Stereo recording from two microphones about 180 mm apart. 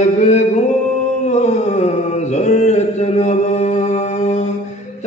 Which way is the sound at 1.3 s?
40° left (ahead or behind).